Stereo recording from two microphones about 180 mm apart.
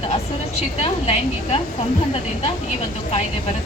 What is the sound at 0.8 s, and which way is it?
Speech, 35° left (ahead or behind).